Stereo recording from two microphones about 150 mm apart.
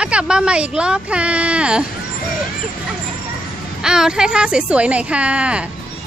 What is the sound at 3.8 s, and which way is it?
A woman's voice, 5° right (ahead or behind).